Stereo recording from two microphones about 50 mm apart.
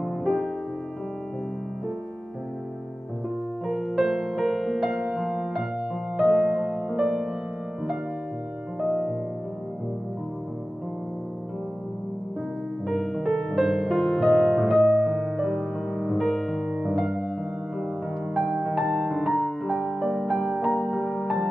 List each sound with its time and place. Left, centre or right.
3.6 s music: centre
6.5 s music: right
6.9 s music: centre
8.7 s music: centre
12.8 s music: centre
18.3 s music: centre